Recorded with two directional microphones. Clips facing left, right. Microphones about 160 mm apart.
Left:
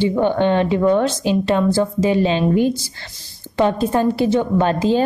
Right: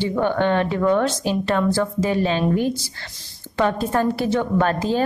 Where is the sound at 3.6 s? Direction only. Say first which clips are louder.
Left 3 dB; 20° left (ahead or behind).